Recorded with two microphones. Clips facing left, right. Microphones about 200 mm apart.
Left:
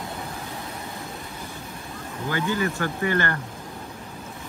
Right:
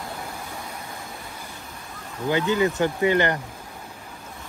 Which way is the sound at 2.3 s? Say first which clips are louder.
Right 4 dB; 20° right (ahead or behind).